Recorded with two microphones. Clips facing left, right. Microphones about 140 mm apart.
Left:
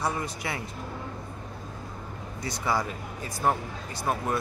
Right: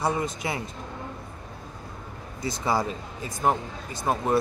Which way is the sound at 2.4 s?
25° right (ahead or behind).